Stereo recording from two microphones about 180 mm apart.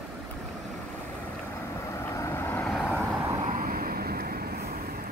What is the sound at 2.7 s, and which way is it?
Vehicle, centre (ahead or behind).